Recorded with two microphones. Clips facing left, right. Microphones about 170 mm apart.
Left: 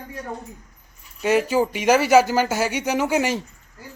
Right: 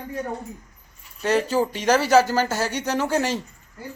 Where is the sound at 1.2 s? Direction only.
10° left (ahead or behind).